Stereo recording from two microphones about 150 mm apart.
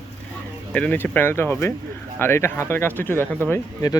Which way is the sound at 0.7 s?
10° left (ahead or behind).